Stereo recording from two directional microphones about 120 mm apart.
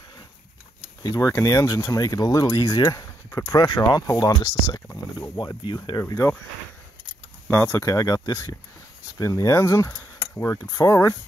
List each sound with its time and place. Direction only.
1.0 s speech: 30° left (ahead or behind)
4.8 s speech: 20° left (ahead or behind)
5.4 s speech: 35° left (ahead or behind)
7.5 s speech: 20° left (ahead or behind)
7.8 s speech: 30° left (ahead or behind)